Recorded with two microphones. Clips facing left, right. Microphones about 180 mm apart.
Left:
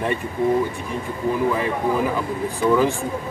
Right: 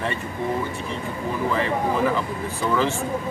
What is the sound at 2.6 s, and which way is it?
Speech, 15° left (ahead or behind).